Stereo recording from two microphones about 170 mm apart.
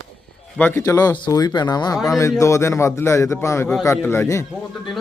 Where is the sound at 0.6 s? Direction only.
15° left (ahead or behind).